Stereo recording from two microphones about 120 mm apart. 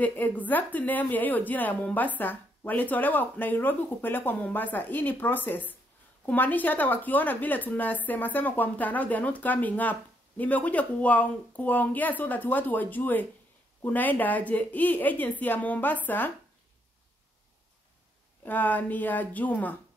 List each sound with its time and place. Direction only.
0.0 s speech: 15° left (ahead or behind)
18.4 s speech: 15° left (ahead or behind)